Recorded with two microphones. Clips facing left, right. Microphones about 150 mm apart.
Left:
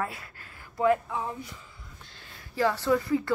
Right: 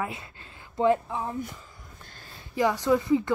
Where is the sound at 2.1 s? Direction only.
40° right (ahead or behind).